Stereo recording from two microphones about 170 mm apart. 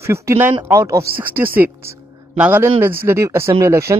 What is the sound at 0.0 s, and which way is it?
Speech, 15° right (ahead or behind).